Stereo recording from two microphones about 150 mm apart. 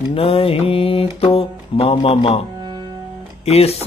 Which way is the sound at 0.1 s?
40° left (ahead or behind).